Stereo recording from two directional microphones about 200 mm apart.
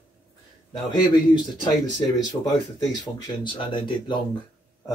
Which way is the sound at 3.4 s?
25° left (ahead or behind).